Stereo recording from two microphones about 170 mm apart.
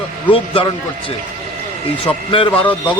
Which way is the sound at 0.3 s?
30° left (ahead or behind).